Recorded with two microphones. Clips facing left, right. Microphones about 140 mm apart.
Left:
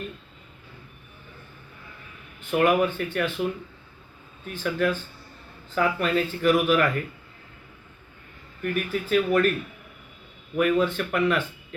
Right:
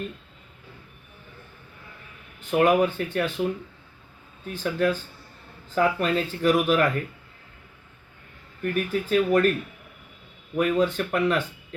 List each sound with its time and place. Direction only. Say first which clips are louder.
2.5 s speech: right 1 dB; 35° right (ahead or behind)
4.4 s speech: right 1 dB; 35° right (ahead or behind)
8.6 s speech: right 2 dB; 40° right (ahead or behind)
10.6 s speech: even; 35° right (ahead or behind)